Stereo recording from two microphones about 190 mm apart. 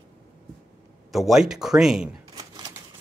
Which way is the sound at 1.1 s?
Centre (ahead or behind).